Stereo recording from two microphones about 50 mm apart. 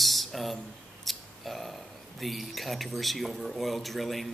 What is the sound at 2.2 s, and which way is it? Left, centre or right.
A man's voice, centre.